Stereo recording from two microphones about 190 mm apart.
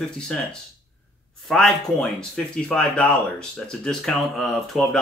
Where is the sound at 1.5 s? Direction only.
5° left (ahead or behind).